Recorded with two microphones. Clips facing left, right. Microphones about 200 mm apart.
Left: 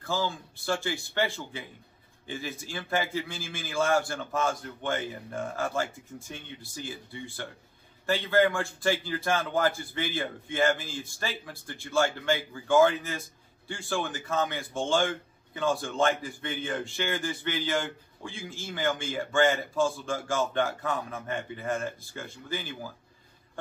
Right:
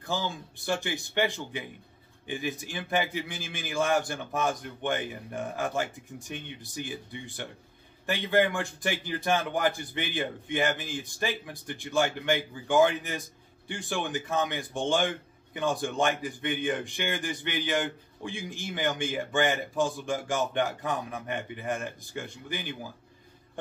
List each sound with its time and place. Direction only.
0.0 s speech: 20° right (ahead or behind)